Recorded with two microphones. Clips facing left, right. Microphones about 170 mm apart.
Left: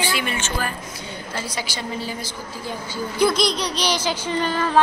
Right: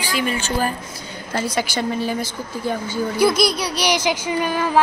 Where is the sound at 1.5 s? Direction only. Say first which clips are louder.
Right 7 dB; 55° right (ahead or behind).